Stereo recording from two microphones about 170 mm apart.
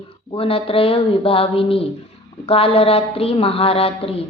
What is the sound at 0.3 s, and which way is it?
A woman's voice, 35° left (ahead or behind).